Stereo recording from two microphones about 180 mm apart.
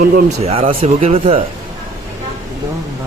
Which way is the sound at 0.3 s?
35° right (ahead or behind).